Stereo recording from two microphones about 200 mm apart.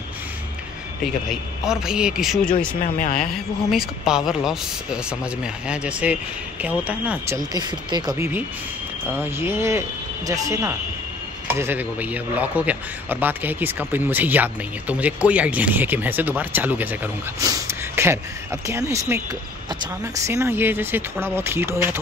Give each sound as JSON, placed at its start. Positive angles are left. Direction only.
{"t": 1.0, "sound": "speech", "side_deg": 0}
{"t": 2.8, "sound": "speech", "side_deg": 40}
{"t": 3.2, "sound": "a man's voice", "side_deg": 0}
{"t": 7.3, "sound": "a man's voice", "side_deg": -20}